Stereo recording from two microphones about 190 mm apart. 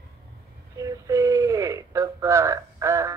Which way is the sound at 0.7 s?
15° right (ahead or behind).